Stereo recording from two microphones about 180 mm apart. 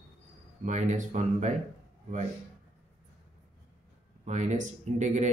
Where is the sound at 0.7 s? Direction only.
40° right (ahead or behind).